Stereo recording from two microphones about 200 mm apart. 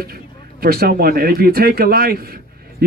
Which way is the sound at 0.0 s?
50° right (ahead or behind).